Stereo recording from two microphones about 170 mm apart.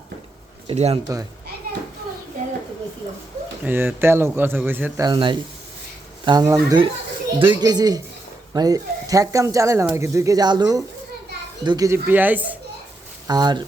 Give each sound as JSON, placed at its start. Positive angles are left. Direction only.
{"t": 0.7, "sound": "speech", "side_deg": -40}
{"t": 3.6, "sound": "speech", "side_deg": -10}
{"t": 5.0, "sound": "a child's voice", "side_deg": -30}
{"t": 13.2, "sound": "speech", "side_deg": -25}